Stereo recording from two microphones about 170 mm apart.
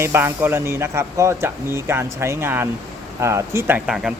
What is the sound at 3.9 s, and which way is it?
Speech, 5° right (ahead or behind).